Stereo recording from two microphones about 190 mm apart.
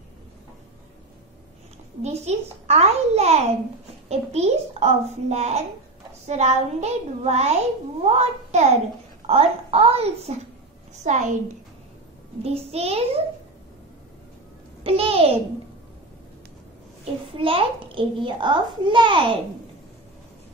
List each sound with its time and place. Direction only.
2.0 s a child's voice: 35° right (ahead or behind)
12.4 s a child's voice: 30° right (ahead or behind)
14.8 s a child's voice: 30° right (ahead or behind)
17.4 s a child's voice: 30° right (ahead or behind)